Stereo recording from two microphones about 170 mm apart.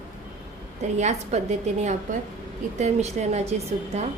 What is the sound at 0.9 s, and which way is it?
Speech, 45° right (ahead or behind).